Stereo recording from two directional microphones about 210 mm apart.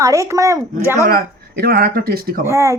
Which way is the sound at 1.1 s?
50° right (ahead or behind).